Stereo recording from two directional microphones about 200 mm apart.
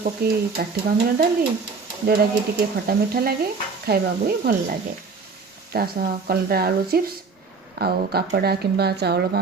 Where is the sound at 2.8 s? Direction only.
50° right (ahead or behind).